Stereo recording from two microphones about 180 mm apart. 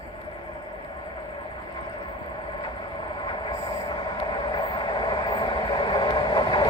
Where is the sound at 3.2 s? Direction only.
25° left (ahead or behind).